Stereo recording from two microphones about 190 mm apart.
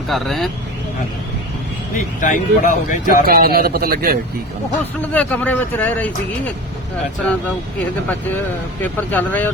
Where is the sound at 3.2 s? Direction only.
50° right (ahead or behind).